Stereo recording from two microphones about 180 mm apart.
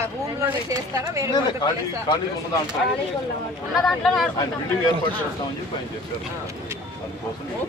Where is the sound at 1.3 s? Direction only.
25° left (ahead or behind).